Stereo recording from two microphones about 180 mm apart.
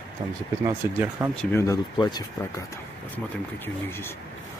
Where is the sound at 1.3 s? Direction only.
5° left (ahead or behind).